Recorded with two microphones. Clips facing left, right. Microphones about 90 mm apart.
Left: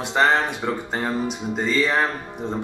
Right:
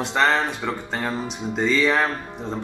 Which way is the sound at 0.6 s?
20° left (ahead or behind).